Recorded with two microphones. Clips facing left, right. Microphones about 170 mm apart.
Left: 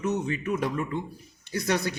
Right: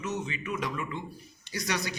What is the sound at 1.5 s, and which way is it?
Speech, 55° left (ahead or behind).